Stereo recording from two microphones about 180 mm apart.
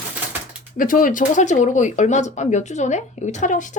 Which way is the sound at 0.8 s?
50° left (ahead or behind).